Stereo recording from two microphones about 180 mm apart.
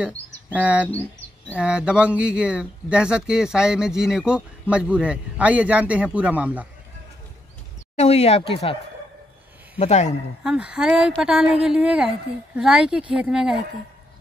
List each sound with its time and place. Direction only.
0.0 s speech: 10° right (ahead or behind)
7.9 s speech: 35° left (ahead or behind)
9.8 s speech: 40° left (ahead or behind)
10.4 s a woman's voice: 5° right (ahead or behind)